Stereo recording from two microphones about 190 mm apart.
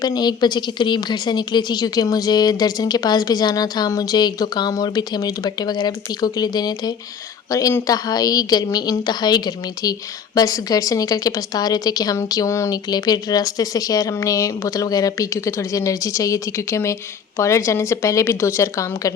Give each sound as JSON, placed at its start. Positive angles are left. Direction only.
{"t": 0.0, "sound": "a woman's voice", "side_deg": 20}